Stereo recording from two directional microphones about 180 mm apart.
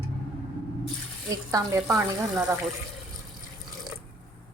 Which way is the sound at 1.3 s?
15° right (ahead or behind).